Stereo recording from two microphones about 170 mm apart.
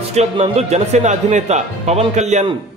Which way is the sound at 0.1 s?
40° right (ahead or behind).